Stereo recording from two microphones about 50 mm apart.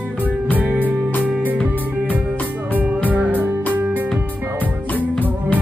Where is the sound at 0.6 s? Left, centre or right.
Right.